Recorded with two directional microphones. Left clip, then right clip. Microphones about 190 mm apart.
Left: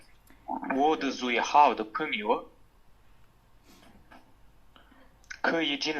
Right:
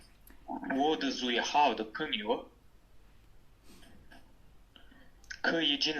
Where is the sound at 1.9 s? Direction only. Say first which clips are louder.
Left 4 dB; 25° right (ahead or behind).